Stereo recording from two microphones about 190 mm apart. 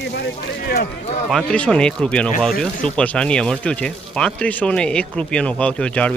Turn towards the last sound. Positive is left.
turn(degrees=5)  # may be behind; listen again after turning